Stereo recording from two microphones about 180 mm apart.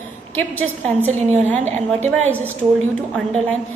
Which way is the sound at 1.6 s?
40° right (ahead or behind).